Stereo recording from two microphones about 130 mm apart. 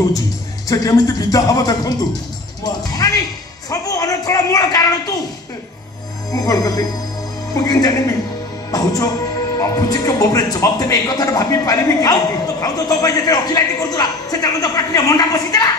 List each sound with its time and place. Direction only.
0.7 s a man's voice: 25° left (ahead or behind)
6.3 s a man's voice: 25° left (ahead or behind)
9.6 s a man's voice: 30° left (ahead or behind)